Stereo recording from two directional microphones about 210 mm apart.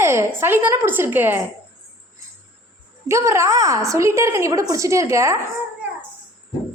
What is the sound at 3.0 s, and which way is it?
A woman's voice, 15° right (ahead or behind).